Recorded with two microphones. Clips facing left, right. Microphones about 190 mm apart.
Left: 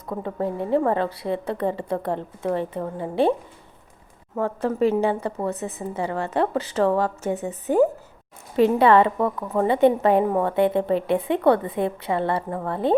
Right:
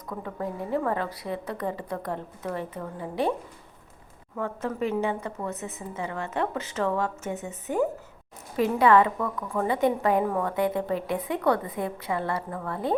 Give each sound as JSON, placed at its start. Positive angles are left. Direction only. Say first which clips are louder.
{"t": 0.0, "sound": "a woman's voice", "louder": "left 6 dB", "side_deg": 30}
{"t": 4.4, "sound": "a woman's voice", "louder": "left 7 dB", "side_deg": 35}